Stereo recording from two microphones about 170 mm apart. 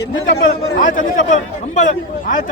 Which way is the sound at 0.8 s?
50° left (ahead or behind).